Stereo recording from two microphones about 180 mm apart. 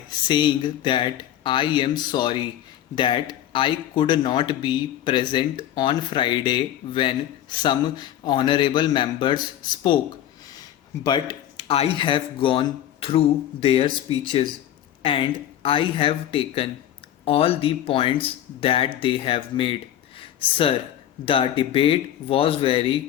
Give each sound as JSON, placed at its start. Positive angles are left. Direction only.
{"t": 0.3, "sound": "speech", "side_deg": 25}
{"t": 20.1, "sound": "a sound", "side_deg": 30}
{"t": 21.2, "sound": "speech", "side_deg": 30}